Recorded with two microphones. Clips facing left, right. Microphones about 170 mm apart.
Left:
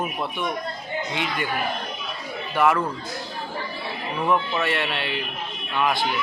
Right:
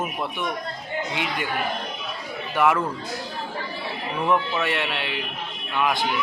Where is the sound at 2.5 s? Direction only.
15° right (ahead or behind).